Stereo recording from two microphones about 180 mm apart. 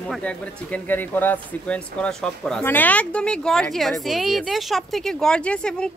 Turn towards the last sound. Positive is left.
turn(degrees=5)  # may be behind; listen again after turning